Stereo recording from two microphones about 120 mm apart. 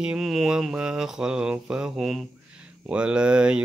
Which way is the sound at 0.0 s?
5° right (ahead or behind).